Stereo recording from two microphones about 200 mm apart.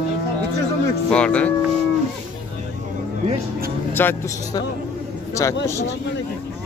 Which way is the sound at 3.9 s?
10° left (ahead or behind).